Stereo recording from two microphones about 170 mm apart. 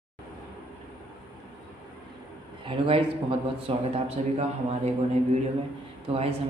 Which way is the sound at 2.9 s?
35° right (ahead or behind).